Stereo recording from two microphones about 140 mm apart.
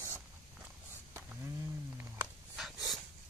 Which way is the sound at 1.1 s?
15° right (ahead or behind).